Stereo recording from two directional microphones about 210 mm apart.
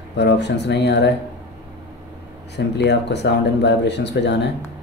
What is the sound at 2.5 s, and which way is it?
Speech, 55° left (ahead or behind).